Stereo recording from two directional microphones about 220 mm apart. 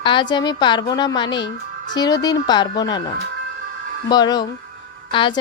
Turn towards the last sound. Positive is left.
turn(degrees=20)  # may be behind; listen again after turning